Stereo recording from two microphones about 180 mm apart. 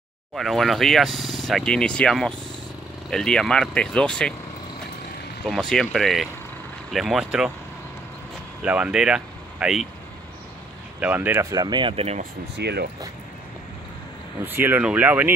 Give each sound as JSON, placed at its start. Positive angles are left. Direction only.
{"t": 0.4, "sound": "speech", "side_deg": 0}
{"t": 5.4, "sound": "speech", "side_deg": 5}
{"t": 8.6, "sound": "speech", "side_deg": -5}
{"t": 11.0, "sound": "speech", "side_deg": -10}
{"t": 12.2, "sound": "speech", "side_deg": -65}
{"t": 14.4, "sound": "speech", "side_deg": -10}